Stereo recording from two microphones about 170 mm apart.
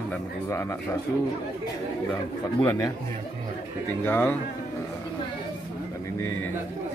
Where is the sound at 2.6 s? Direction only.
25° left (ahead or behind).